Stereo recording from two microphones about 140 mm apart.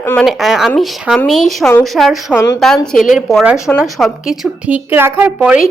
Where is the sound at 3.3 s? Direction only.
5° right (ahead or behind).